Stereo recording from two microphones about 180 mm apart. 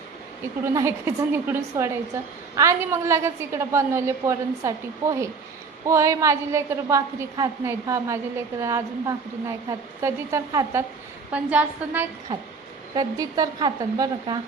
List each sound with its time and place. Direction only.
0.6 s a woman's voice: 15° right (ahead or behind)
13.0 s speech: 20° right (ahead or behind)